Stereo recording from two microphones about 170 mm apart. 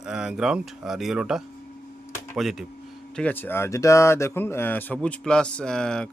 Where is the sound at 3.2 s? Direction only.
10° left (ahead or behind).